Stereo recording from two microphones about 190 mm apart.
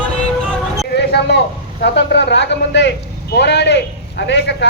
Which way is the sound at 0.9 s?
60° left (ahead or behind).